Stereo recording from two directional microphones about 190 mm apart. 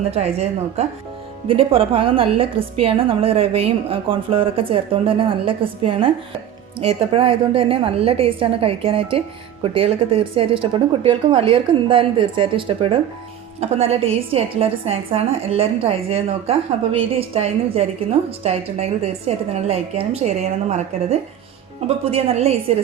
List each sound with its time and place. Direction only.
0.1 s a woman's voice: 35° right (ahead or behind)